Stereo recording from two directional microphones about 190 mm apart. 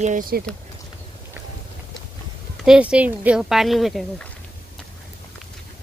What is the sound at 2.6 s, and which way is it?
Speech, 5° right (ahead or behind).